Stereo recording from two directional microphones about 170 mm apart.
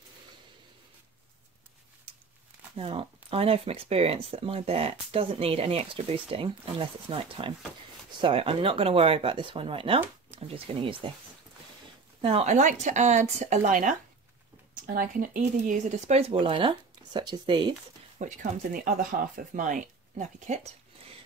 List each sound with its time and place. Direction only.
2.8 s speech: 35° right (ahead or behind)
12.2 s speech: 35° right (ahead or behind)
18.2 s speech: 45° right (ahead or behind)